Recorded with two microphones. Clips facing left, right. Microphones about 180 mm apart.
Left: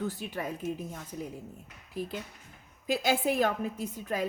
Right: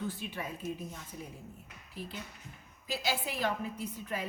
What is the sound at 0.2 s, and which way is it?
Speech, 40° left (ahead or behind).